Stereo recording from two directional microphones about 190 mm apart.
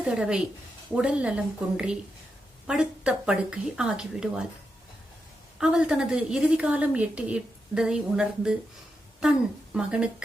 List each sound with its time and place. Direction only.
0.0 s a woman's voice: 5° right (ahead or behind)
5.5 s a woman's voice: 5° right (ahead or behind)
9.7 s a woman's voice: 5° right (ahead or behind)